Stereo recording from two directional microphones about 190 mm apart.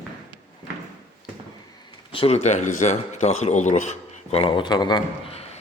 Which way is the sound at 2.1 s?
30° left (ahead or behind).